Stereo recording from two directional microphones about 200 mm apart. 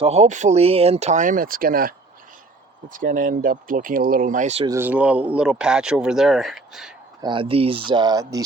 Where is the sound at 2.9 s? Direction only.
45° right (ahead or behind).